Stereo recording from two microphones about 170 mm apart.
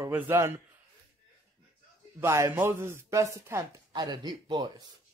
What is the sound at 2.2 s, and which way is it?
A man's voice, 15° right (ahead or behind).